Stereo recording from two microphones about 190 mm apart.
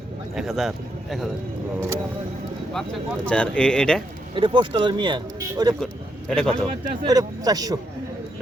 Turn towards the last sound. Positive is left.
turn(degrees=-20)  # may be behind; listen again after turning